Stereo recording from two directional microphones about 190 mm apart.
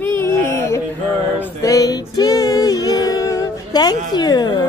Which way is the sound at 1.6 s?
15° left (ahead or behind).